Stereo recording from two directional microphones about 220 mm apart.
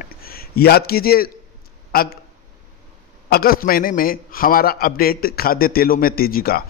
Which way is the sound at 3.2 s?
40° left (ahead or behind).